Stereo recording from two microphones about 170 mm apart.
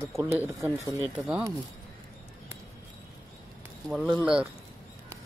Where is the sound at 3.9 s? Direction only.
Centre (ahead or behind).